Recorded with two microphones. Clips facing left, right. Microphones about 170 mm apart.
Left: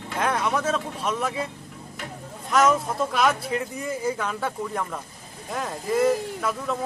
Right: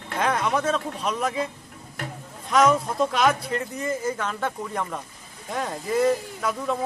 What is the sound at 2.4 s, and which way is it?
Speech, centre (ahead or behind).